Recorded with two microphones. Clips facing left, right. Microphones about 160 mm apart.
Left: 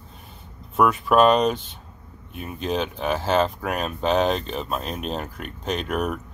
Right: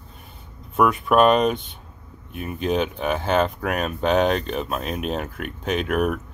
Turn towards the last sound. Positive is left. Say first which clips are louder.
# right 3 dB
turn(degrees=-5)  # may be behind; listen again after turning